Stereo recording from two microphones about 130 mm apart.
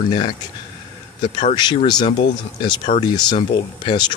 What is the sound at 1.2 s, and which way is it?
Speech, 40° left (ahead or behind).